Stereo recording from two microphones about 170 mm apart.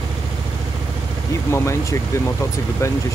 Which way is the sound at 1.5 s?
15° left (ahead or behind).